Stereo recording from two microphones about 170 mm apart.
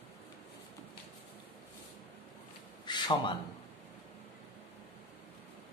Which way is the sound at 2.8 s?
25° left (ahead or behind).